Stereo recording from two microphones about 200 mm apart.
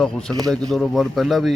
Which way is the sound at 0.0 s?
5° left (ahead or behind).